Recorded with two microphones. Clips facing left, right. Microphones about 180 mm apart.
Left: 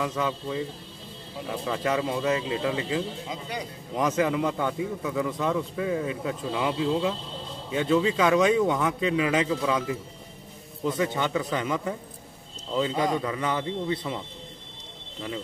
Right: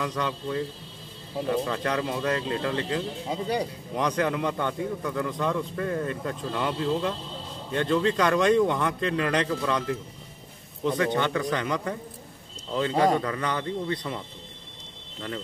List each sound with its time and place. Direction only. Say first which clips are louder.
0.0 s a man's voice: left 1 dB; 5° left (ahead or behind)
3.3 s speech: right 7 dB; 35° right (ahead or behind)
3.9 s a man's voice: left 2 dB; 5° left (ahead or behind)
13.2 s a man's voice: left 1 dB; 5° left (ahead or behind)